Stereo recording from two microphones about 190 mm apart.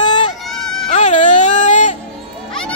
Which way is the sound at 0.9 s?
40° left (ahead or behind).